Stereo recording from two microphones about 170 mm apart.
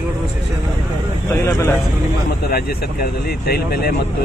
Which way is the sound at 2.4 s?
65° left (ahead or behind).